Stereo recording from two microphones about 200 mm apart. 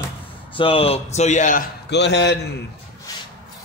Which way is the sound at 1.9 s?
60° left (ahead or behind).